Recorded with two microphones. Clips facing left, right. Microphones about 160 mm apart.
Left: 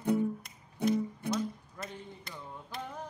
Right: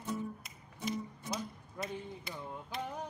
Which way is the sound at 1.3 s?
Centre (ahead or behind).